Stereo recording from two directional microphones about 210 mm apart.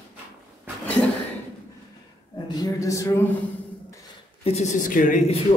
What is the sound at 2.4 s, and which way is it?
Speech, 15° left (ahead or behind).